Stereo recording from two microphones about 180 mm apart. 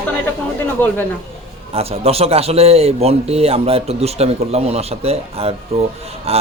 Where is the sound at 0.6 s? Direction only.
10° left (ahead or behind).